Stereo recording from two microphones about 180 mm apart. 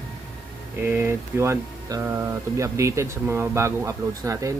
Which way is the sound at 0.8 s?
15° right (ahead or behind).